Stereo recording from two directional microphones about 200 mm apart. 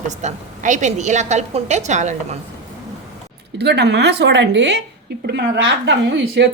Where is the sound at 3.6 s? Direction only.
55° right (ahead or behind).